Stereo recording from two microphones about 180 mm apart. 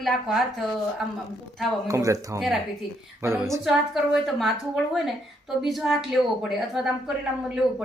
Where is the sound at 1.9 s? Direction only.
15° right (ahead or behind).